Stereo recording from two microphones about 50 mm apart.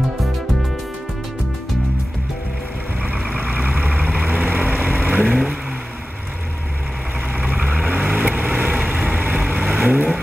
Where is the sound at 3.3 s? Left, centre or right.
Right.